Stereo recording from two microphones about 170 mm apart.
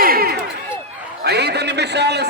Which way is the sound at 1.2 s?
75° right (ahead or behind).